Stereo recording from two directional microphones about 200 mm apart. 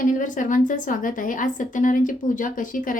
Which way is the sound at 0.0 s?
40° left (ahead or behind).